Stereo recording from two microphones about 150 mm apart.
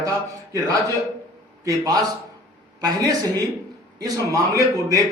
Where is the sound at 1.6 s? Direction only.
25° right (ahead or behind).